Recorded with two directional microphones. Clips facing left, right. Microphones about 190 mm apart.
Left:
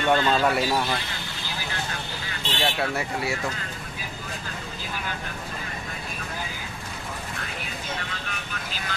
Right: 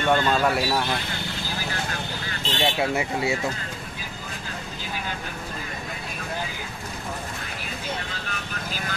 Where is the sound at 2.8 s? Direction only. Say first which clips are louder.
Right 3 dB; 20° right (ahead or behind).